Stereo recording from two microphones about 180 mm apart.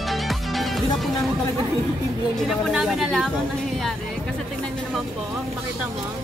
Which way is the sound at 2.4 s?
Centre (ahead or behind).